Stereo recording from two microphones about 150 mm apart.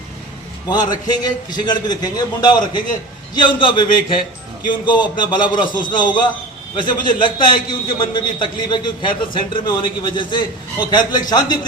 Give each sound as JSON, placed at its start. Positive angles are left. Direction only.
{"t": 0.7, "sound": "a man's voice", "side_deg": 30}